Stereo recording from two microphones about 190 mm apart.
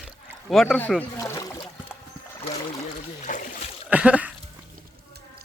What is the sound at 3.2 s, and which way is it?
Splash, 40° left (ahead or behind).